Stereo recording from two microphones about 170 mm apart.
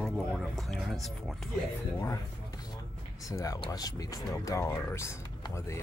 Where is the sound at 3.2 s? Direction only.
20° left (ahead or behind).